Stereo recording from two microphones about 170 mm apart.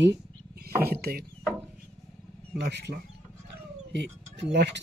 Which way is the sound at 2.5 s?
80° right.